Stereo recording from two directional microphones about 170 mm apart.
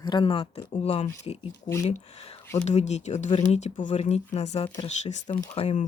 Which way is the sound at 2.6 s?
40° left (ahead or behind).